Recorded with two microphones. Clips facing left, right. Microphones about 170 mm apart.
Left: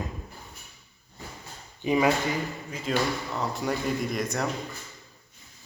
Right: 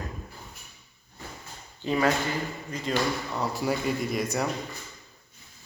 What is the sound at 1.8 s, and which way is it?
Speech, 15° left (ahead or behind).